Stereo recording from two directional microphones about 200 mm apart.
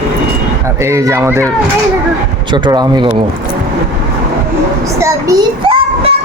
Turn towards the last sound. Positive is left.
turn(degrees=-25)  # may be behind; listen again after turning